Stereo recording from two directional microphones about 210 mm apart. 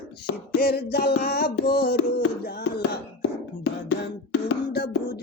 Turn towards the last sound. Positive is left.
turn(degrees=55)  # may be behind; listen again after turning